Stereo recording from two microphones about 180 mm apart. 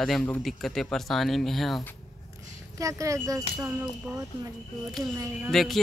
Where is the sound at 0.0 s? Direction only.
5° left (ahead or behind).